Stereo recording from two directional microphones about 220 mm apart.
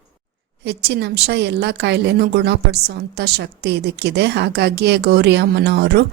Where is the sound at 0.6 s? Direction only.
50° right (ahead or behind).